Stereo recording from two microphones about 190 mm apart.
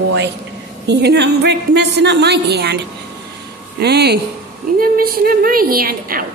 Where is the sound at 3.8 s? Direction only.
60° right (ahead or behind).